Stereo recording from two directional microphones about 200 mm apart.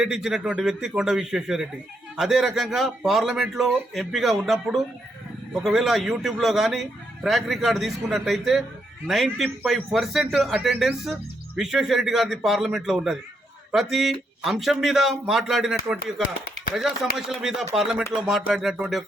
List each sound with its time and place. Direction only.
0.0 s a man's voice: 5° right (ahead or behind)